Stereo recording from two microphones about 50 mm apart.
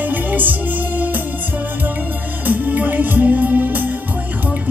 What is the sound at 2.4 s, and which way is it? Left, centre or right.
Music, right.